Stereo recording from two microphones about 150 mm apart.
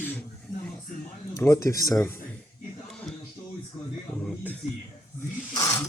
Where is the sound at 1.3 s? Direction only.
20° left (ahead or behind).